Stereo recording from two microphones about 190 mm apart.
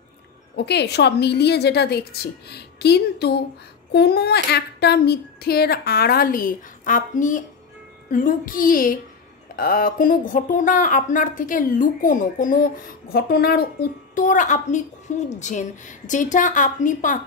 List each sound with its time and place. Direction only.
0.6 s speech: 60° left (ahead or behind); by 17.2 s 40° left (ahead or behind)